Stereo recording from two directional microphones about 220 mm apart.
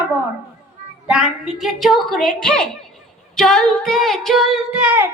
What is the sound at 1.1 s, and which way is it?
A woman's voice, 5° right (ahead or behind).